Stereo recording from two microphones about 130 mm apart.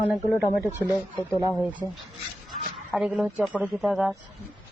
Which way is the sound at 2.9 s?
5° right (ahead or behind).